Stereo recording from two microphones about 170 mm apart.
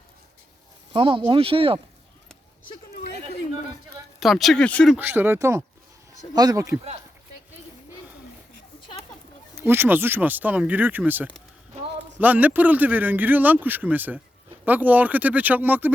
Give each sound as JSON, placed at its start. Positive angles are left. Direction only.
{"t": 0.9, "sound": "speech", "side_deg": -30}
{"t": 4.2, "sound": "speech", "side_deg": 0}
{"t": 4.9, "sound": "speech", "side_deg": -10}
{"t": 9.6, "sound": "speech", "side_deg": -15}